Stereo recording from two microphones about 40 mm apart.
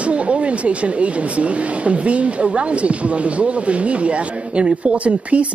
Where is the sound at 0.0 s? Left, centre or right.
Right.